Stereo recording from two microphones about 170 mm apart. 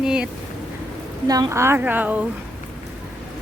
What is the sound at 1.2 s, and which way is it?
Speech, 20° right (ahead or behind).